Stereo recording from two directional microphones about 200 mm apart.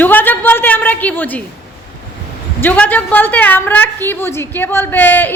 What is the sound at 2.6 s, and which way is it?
A woman's voice, 10° left (ahead or behind).